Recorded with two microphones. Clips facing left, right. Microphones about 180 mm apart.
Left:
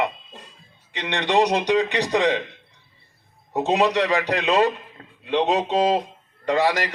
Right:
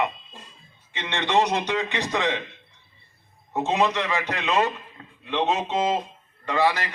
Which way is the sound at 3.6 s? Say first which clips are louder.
Left 4 dB; 35° left (ahead or behind).